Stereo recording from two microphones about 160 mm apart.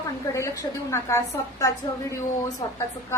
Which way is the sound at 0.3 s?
20° left (ahead or behind).